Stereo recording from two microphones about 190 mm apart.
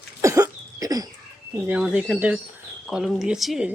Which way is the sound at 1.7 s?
5° right (ahead or behind).